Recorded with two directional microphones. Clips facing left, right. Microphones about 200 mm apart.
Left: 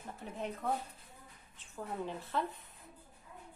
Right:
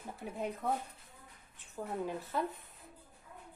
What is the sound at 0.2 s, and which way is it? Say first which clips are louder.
Speech: right 2 dB; 10° right (ahead or behind).